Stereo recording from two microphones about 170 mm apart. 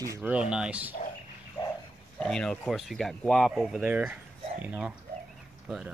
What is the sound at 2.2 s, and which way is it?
Speech, 5° left (ahead or behind).